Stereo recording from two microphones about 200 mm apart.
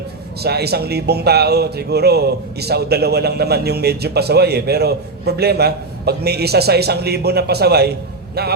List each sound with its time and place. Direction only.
0.3 s speech: 55° right (ahead or behind)